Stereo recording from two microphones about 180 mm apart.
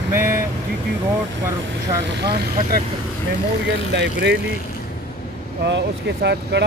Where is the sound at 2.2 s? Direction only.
65° right (ahead or behind).